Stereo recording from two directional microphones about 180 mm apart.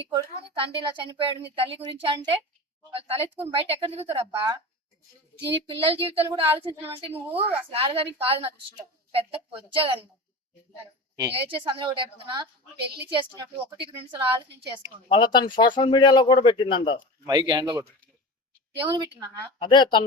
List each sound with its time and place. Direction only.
0.1 s a woman's voice: 25° right (ahead or behind)
5.6 s a woman's voice: 30° right (ahead or behind)
11.2 s a woman's voice: 30° right (ahead or behind)
15.1 s speech: 25° left (ahead or behind)
17.2 s a woman's voice: 25° right (ahead or behind)
18.9 s a woman's voice: 25° right (ahead or behind)
19.5 s speech: 25° left (ahead or behind)